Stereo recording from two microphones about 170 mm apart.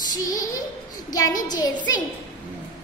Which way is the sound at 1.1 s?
20° left (ahead or behind).